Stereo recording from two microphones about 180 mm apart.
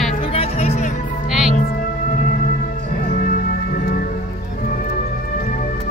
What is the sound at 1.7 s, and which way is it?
Music, 50° left (ahead or behind).